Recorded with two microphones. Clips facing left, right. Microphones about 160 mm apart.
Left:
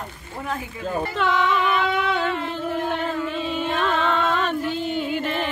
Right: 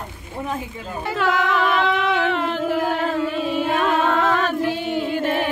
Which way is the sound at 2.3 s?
85° right.